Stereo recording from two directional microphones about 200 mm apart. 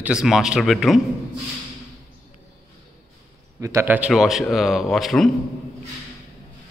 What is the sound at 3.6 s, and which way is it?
A man's voice, 15° right (ahead or behind).